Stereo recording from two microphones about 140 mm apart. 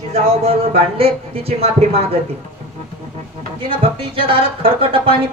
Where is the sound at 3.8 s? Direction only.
40° right (ahead or behind).